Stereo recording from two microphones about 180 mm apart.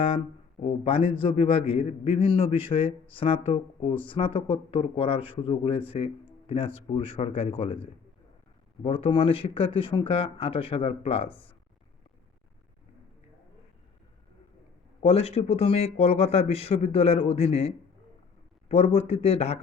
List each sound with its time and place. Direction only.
0.9 s a man's voice: 30° left (ahead or behind)
15.0 s a man's voice: 35° left (ahead or behind)